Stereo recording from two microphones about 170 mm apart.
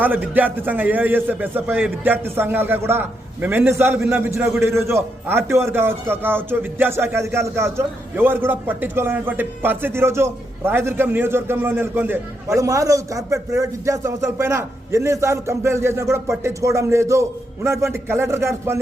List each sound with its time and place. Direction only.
0.0 s a man's voice: 10° right (ahead or behind)